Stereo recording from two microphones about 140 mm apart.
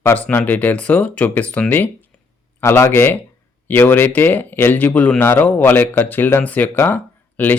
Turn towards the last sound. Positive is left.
turn(degrees=10)  # may be behind; listen again after turning